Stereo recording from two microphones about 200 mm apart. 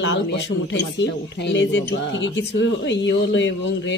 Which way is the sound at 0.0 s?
60° left (ahead or behind).